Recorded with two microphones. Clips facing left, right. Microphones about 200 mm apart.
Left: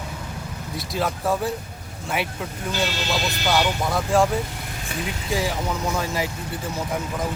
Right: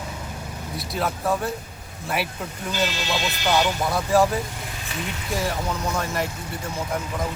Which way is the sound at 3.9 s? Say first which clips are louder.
Even; centre (ahead or behind).